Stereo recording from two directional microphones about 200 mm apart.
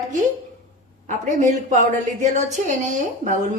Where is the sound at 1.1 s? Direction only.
40° right (ahead or behind).